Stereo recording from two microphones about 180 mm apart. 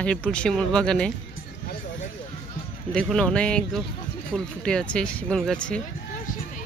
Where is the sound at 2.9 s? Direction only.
5° left (ahead or behind).